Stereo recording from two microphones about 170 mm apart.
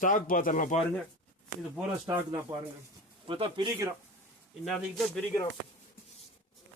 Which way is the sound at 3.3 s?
30° right (ahead or behind).